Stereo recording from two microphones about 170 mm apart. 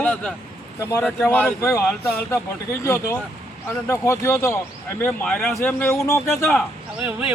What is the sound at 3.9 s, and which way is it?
Speech, 15° left (ahead or behind).